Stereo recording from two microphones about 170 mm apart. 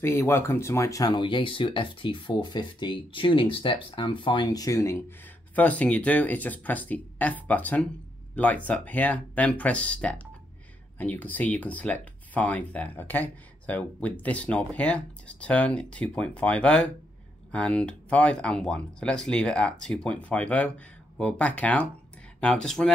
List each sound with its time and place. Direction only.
0.0 s speech: 15° left (ahead or behind)
5.5 s speech: 10° left (ahead or behind)